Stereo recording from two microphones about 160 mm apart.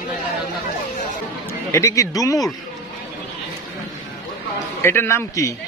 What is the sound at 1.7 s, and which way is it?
Speech, 20° left (ahead or behind).